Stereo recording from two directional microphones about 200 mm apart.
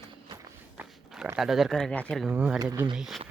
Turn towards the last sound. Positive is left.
turn(degrees=0)  # may be behind; listen again after turning